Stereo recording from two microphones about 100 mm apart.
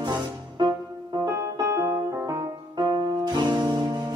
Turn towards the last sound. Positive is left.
turn(degrees=-50)  # may be behind; listen again after turning